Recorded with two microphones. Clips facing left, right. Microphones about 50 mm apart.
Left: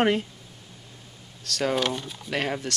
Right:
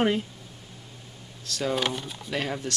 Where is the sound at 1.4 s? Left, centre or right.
Left.